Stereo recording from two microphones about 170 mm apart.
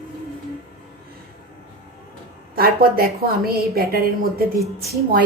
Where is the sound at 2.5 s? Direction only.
60° right (ahead or behind).